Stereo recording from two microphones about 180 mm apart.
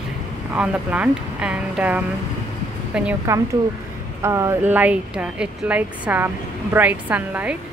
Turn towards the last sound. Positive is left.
turn(degrees=-10)  # may be behind; listen again after turning